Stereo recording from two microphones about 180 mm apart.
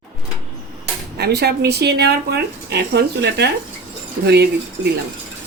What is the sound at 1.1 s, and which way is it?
Speech, 65° right (ahead or behind).